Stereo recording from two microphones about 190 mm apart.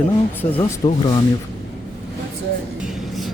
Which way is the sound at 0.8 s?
25° left (ahead or behind).